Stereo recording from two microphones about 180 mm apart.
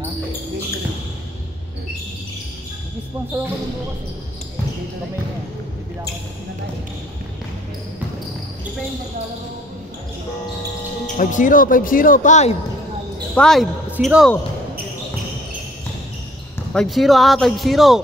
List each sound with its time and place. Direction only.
11.1 s speech: 45° left (ahead or behind)
13.3 s speech: 5° left (ahead or behind)
16.7 s speech: centre (ahead or behind)